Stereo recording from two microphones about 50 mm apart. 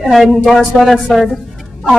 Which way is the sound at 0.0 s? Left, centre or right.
Centre.